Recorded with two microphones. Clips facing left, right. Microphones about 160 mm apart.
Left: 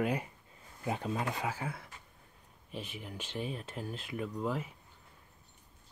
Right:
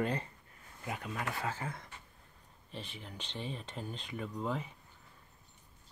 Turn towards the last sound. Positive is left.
turn(degrees=5)  # may be behind; listen again after turning